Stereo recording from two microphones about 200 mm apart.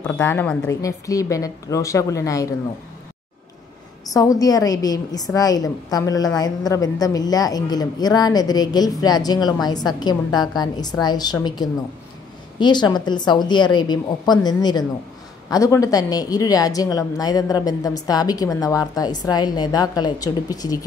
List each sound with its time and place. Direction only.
0.1 s a woman's voice: 10° left (ahead or behind)
4.1 s a woman's voice: 15° left (ahead or behind)